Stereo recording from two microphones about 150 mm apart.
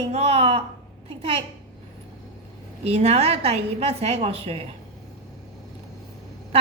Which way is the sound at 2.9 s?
45° right (ahead or behind).